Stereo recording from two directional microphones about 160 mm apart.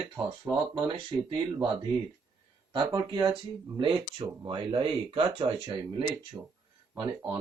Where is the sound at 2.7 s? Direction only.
30° right (ahead or behind).